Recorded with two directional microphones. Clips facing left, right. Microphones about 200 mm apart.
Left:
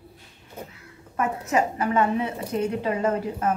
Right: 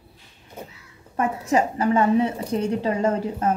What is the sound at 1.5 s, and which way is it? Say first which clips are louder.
A woman's voice: right 4 dB; 30° right (ahead or behind).